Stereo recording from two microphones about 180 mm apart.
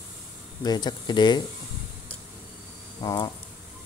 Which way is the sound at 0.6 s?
20° left (ahead or behind).